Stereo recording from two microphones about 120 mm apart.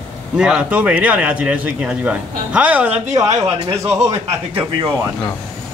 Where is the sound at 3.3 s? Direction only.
30° right (ahead or behind).